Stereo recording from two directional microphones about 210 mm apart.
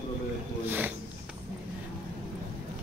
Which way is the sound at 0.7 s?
10° right (ahead or behind).